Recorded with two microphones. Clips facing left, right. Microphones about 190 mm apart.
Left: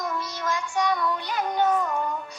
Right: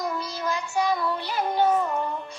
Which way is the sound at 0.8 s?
25° right (ahead or behind).